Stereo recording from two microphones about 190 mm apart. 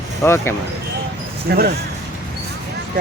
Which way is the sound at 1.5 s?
55° right (ahead or behind).